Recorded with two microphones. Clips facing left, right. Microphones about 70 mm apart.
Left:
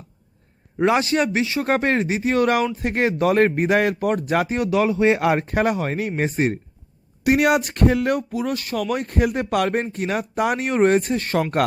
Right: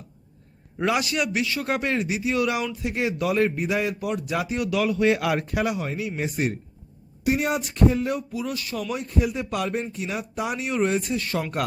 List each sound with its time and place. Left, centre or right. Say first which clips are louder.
0.9 s speech: left 5 dB; left
1.6 s a man's voice: left 5 dB; left
7.3 s a man's voice: left 6 dB; left